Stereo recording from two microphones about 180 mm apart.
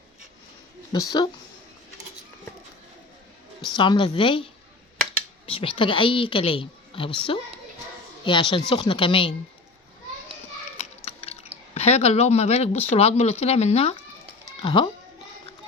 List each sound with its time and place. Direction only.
0.9 s a woman's voice: 20° left (ahead or behind)
3.8 s a woman's voice: 25° left (ahead or behind)
5.5 s a woman's voice: 30° left (ahead or behind)
10.8 s a sound: 35° left (ahead or behind)
11.7 s speech: 35° left (ahead or behind)